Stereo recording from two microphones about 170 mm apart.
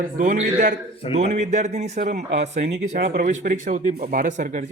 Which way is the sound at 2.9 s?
55° right (ahead or behind).